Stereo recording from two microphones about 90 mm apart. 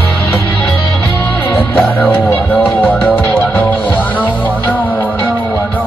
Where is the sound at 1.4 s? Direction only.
20° left (ahead or behind).